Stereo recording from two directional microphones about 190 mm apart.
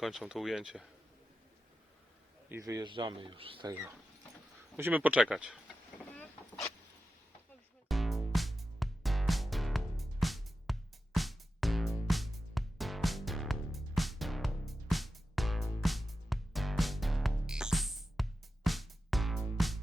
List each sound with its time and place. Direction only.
0.0 s speech: centre (ahead or behind)
2.5 s speech: 15° right (ahead or behind)
4.8 s speech: 10° right (ahead or behind)
7.9 s music: centre (ahead or behind)